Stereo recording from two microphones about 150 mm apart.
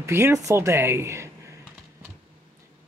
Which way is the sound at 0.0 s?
15° right (ahead or behind).